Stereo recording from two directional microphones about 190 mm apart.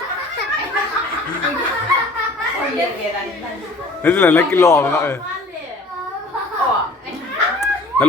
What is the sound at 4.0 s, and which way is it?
Speech, 10° left (ahead or behind).